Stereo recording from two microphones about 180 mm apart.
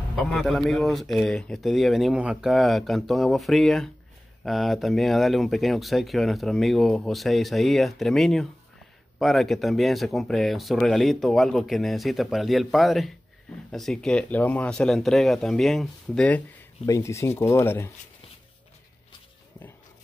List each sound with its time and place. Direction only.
0.1 s speech: centre (ahead or behind)
16.8 s speech: 15° left (ahead or behind)